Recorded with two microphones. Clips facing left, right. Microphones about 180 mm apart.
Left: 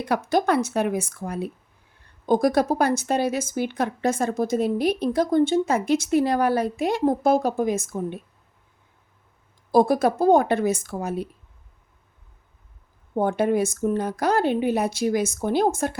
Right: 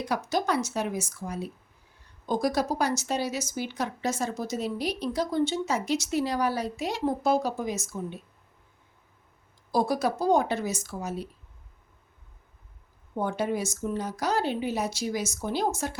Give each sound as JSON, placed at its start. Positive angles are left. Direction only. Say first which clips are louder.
{"t": 0.0, "sound": "speech", "louder": "left 6 dB", "side_deg": 60}
{"t": 9.7, "sound": "speech", "louder": "left 7 dB", "side_deg": 55}
{"t": 13.1, "sound": "speech", "louder": "left 7 dB", "side_deg": 55}